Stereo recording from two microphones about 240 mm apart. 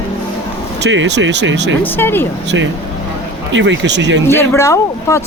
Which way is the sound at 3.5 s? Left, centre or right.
Right.